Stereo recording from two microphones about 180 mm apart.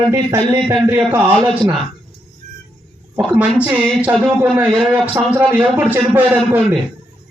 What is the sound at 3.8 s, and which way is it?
A man's voice, 5° right (ahead or behind).